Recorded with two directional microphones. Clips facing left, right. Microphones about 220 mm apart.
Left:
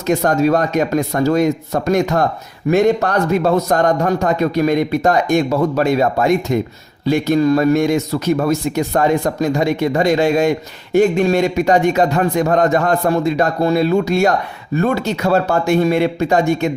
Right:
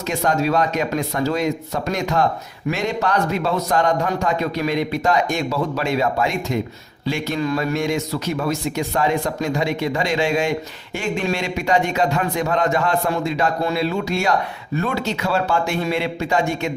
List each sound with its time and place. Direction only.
0.1 s a man's voice: 45° left (ahead or behind)